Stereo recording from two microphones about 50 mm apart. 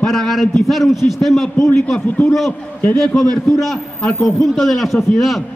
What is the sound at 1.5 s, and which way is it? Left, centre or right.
Speech, left.